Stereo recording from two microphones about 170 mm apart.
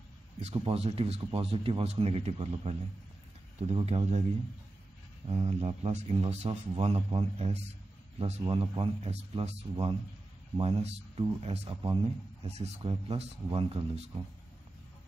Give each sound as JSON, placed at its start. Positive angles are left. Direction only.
{"t": 0.4, "sound": "speech", "side_deg": -35}
{"t": 5.3, "sound": "speech", "side_deg": -40}